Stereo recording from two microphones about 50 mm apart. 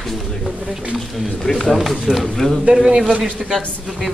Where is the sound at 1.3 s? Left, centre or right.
Centre.